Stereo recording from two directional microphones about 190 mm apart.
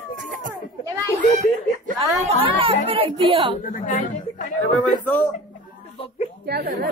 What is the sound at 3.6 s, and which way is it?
Speech, 45° left (ahead or behind).